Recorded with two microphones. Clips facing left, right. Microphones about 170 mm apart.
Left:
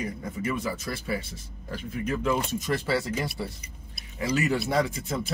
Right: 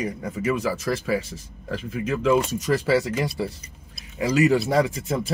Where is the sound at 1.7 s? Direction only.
80° right.